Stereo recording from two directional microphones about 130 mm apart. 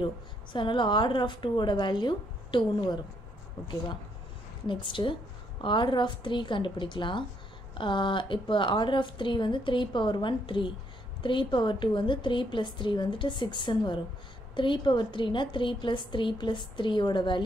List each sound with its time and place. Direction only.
0.0 s a woman's voice: 35° left (ahead or behind)
4.6 s a woman's voice: 40° left (ahead or behind)